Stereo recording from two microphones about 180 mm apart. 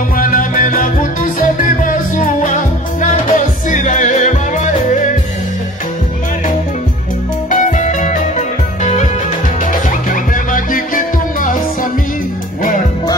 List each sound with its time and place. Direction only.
0.2 s music: 50° left (ahead or behind)
7.5 s music: 45° left (ahead or behind)
10.3 s music: 50° left (ahead or behind)